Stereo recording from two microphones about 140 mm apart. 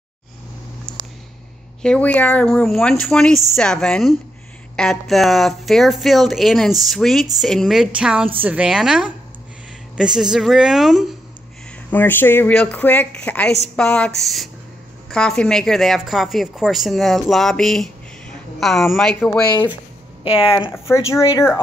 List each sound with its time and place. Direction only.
1.8 s speech: 10° left (ahead or behind)
11.9 s speech: 15° left (ahead or behind)
20.2 s speech: 40° left (ahead or behind)
20.9 s speech: 20° left (ahead or behind)